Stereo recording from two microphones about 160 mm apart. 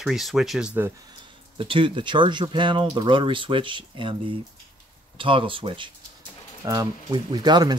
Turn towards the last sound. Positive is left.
turn(degrees=-25)  # may be behind; listen again after turning